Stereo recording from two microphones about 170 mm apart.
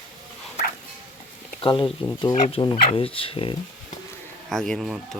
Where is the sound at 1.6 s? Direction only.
30° left (ahead or behind).